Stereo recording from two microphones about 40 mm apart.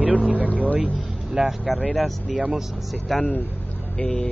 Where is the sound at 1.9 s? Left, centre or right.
Centre.